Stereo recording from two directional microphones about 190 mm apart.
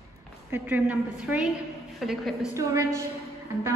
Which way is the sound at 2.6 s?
15° right (ahead or behind).